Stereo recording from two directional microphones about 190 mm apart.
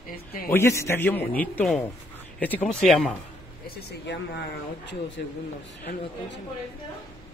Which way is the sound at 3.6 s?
65° left (ahead or behind).